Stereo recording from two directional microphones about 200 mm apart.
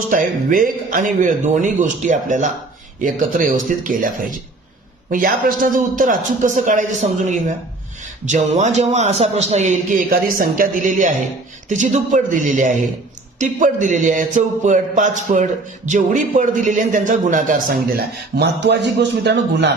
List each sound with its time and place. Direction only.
0.1 s a man's voice: 40° right (ahead or behind)